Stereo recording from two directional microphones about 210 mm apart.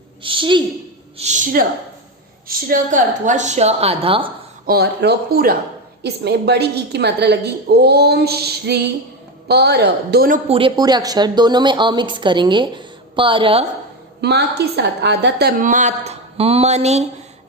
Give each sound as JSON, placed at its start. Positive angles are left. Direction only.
{"t": 0.2, "sound": "a woman's voice", "side_deg": -25}
{"t": 1.2, "sound": "a woman's voice", "side_deg": -35}
{"t": 4.6, "sound": "a woman's voice", "side_deg": -50}
{"t": 10.5, "sound": "a woman's voice", "side_deg": -20}
{"t": 14.2, "sound": "a woman's voice", "side_deg": -50}